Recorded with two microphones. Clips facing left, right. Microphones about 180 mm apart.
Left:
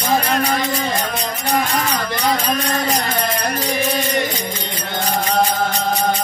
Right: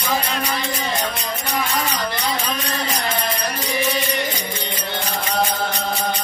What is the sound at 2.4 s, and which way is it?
Music, 45° left (ahead or behind).